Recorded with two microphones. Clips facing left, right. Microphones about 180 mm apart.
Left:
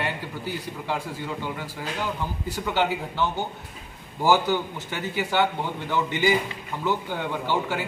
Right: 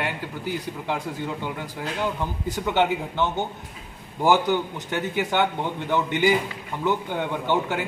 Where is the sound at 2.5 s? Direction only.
20° right (ahead or behind).